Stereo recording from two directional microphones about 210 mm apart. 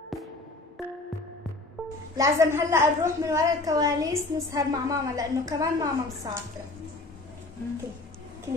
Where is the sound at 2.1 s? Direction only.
15° right (ahead or behind).